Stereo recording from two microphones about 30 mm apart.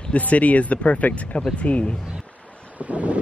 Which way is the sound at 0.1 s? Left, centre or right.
Left.